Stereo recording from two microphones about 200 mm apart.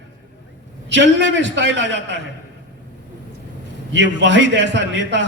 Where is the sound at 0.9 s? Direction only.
60° right (ahead or behind).